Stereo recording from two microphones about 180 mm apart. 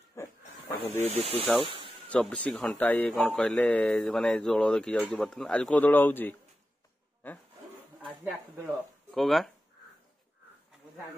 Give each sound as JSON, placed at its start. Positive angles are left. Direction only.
{"t": 0.1, "sound": "snake", "side_deg": 15}
{"t": 1.1, "sound": "speech", "side_deg": -30}
{"t": 2.0, "sound": "speech", "side_deg": 5}
{"t": 9.1, "sound": "speech", "side_deg": 0}